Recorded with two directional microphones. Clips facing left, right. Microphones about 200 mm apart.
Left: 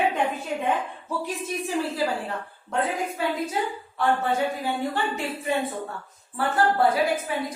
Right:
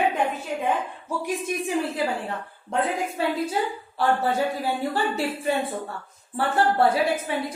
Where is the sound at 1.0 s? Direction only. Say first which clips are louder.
Right 4 dB; 15° right (ahead or behind).